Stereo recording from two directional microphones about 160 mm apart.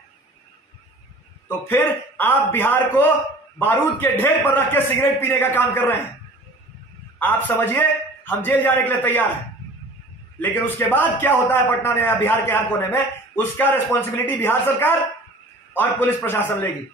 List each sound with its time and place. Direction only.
1.7 s a man's voice: 10° left (ahead or behind)
7.2 s a man's voice: 10° left (ahead or behind)
10.4 s a man's voice: 10° left (ahead or behind)